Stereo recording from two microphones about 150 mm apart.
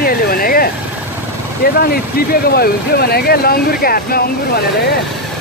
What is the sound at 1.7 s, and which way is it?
Speech, 90° left.